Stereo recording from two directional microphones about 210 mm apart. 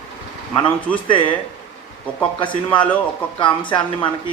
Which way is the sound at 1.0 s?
25° left (ahead or behind).